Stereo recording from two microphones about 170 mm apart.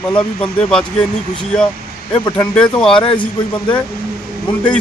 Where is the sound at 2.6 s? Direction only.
5° left (ahead or behind).